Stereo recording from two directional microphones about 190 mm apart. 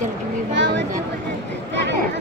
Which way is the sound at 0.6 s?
70° right (ahead or behind).